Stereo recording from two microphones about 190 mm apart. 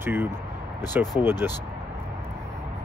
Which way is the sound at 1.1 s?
30° left (ahead or behind).